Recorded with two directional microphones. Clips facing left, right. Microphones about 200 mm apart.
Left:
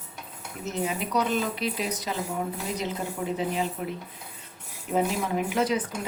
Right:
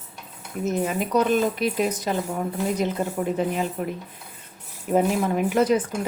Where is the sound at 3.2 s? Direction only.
50° right (ahead or behind).